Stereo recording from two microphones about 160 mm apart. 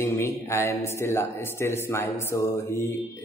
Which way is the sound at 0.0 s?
15° left (ahead or behind).